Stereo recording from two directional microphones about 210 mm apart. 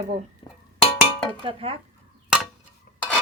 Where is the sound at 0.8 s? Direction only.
5° left (ahead or behind).